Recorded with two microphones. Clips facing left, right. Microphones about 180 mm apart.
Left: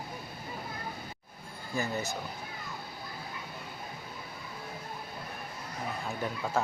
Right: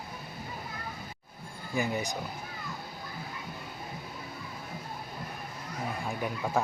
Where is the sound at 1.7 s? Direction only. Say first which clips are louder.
Right 2 dB; 15° right (ahead or behind).